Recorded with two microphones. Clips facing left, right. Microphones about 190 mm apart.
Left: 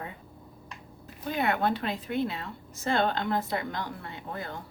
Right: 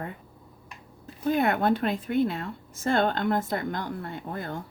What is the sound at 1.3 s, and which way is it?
A woman's voice, 50° right (ahead or behind).